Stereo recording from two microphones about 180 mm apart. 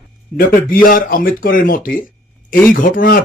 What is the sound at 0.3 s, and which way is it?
Speech, 50° left (ahead or behind).